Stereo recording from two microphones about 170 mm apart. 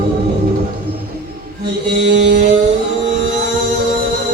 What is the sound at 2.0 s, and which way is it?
Mantra, 90° right.